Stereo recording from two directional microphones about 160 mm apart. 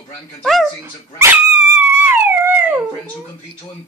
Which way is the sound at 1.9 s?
15° right (ahead or behind).